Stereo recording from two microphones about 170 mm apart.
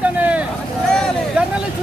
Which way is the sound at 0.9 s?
5° left (ahead or behind).